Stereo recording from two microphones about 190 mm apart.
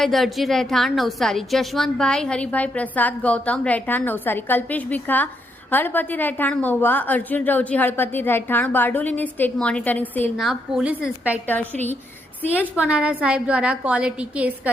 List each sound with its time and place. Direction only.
0.0 s a woman's voice: centre (ahead or behind)
10.3 s a woman's voice: centre (ahead or behind)
11.4 s a woman's voice: 10° left (ahead or behind)
12.5 s a woman's voice: 5° right (ahead or behind)